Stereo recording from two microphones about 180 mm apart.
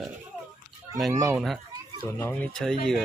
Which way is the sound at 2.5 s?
5° left (ahead or behind).